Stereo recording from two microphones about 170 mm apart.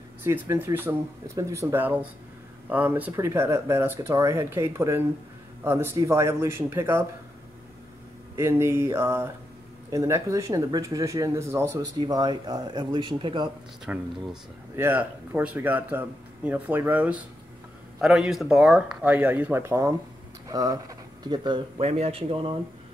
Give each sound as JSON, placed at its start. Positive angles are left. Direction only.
{"t": 0.2, "sound": "speech", "side_deg": -15}
{"t": 8.4, "sound": "speech", "side_deg": -15}
{"t": 13.8, "sound": "speech", "side_deg": -10}